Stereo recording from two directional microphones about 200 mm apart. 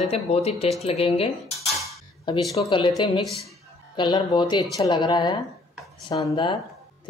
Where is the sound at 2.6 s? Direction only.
25° left (ahead or behind).